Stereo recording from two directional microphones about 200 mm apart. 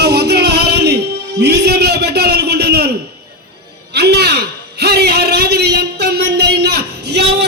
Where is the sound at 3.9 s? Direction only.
55° right (ahead or behind).